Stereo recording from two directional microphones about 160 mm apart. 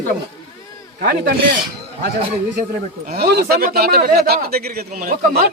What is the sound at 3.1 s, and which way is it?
A man's voice, 80° right.